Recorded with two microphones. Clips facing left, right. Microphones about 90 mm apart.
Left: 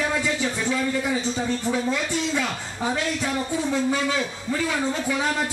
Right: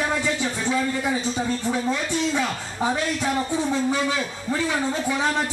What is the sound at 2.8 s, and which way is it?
A man's voice, 25° right (ahead or behind).